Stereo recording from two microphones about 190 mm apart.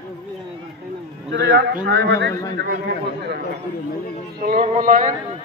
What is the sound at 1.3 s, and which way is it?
A man's voice, 70° right (ahead or behind).